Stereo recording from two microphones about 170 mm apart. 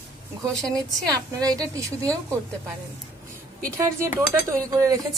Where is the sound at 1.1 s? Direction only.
20° right (ahead or behind).